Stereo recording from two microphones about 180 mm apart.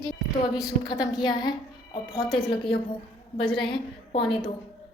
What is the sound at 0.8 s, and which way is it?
A woman's voice, 20° left (ahead or behind).